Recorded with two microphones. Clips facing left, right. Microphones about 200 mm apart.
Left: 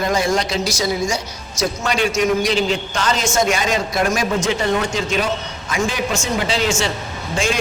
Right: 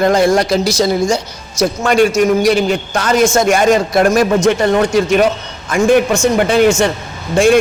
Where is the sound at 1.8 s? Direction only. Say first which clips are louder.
Right 8 dB; 50° right (ahead or behind).